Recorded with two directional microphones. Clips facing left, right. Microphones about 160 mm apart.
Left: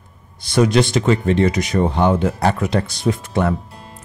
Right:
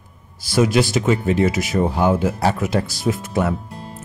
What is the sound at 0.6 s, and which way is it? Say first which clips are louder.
Speech: left 2 dB; 5° right (ahead or behind).